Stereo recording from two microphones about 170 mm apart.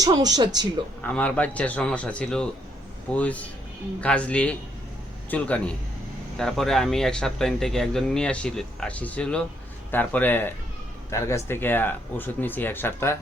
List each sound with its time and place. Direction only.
0.0 s speech: 25° right (ahead or behind)
1.0 s speech: 10° left (ahead or behind)